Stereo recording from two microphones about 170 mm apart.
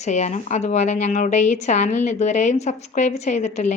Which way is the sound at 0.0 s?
45° left (ahead or behind).